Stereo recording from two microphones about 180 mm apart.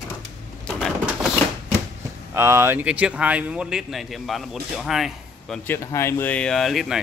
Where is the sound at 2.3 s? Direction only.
15° right (ahead or behind).